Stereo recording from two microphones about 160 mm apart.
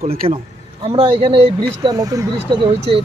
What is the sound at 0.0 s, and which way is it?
Speech, 65° right (ahead or behind).